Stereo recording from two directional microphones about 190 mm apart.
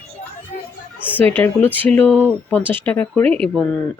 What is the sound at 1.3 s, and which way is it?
Speech, 10° left (ahead or behind).